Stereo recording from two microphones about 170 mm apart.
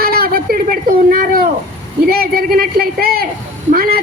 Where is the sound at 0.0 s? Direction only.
60° right (ahead or behind).